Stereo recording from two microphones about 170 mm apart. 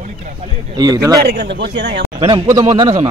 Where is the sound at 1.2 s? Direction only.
75° right (ahead or behind).